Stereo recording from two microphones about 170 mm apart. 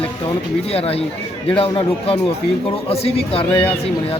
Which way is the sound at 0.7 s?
35° left (ahead or behind).